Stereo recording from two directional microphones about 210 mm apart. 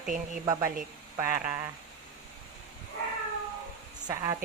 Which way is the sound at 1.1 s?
10° right (ahead or behind).